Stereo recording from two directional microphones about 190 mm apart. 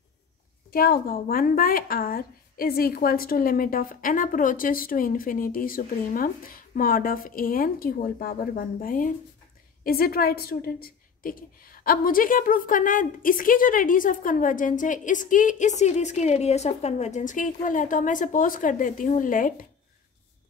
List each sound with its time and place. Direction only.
0.7 s a woman's voice: 50° left (ahead or behind)